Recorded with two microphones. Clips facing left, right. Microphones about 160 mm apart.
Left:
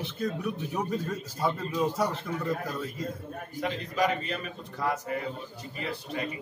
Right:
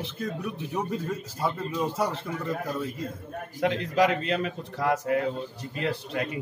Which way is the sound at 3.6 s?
75° right (ahead or behind).